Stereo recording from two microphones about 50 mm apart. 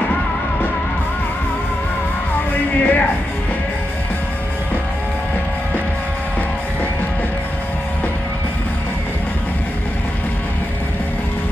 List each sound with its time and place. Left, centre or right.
2.8 s music: left